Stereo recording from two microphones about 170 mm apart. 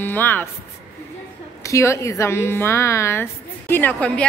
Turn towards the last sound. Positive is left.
turn(degrees=5)  # may be behind; listen again after turning